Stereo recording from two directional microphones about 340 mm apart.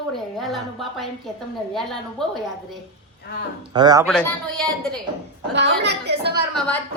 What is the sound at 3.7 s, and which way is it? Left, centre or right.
Speech, centre.